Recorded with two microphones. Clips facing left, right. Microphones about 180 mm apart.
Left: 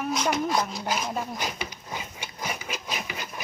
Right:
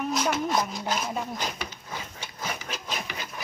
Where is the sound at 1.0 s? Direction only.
Centre (ahead or behind).